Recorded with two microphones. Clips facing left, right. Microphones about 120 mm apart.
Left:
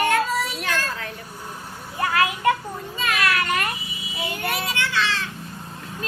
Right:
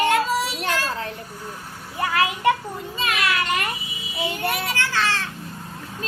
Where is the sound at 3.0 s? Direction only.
20° right (ahead or behind).